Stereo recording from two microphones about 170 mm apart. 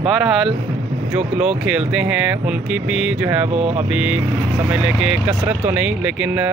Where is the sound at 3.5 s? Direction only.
40° right (ahead or behind).